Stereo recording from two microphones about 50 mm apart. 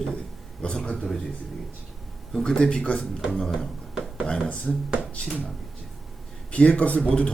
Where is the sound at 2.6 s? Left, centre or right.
Left.